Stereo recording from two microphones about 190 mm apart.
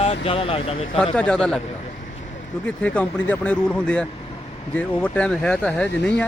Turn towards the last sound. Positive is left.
turn(degrees=5)  # may be behind; listen again after turning